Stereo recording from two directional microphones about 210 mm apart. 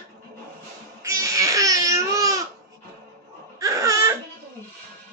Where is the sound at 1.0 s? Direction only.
15° right (ahead or behind).